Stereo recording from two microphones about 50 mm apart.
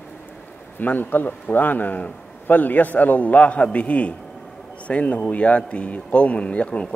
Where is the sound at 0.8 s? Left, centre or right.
Left.